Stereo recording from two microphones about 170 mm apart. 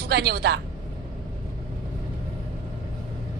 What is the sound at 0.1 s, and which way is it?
Speech, 75° right (ahead or behind).